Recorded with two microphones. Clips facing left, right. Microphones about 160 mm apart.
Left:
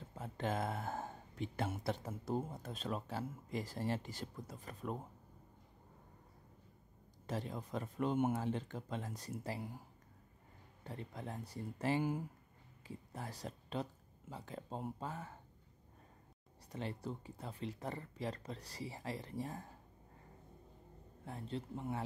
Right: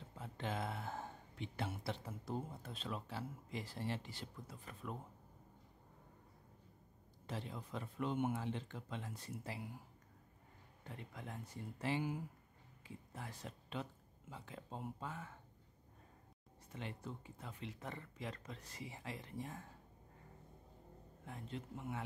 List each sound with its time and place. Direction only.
0.1 s speech: 45° left (ahead or behind)
7.2 s speech: 45° left (ahead or behind)
10.8 s speech: 35° left (ahead or behind)
16.7 s speech: 35° left (ahead or behind)
21.3 s speech: 35° left (ahead or behind)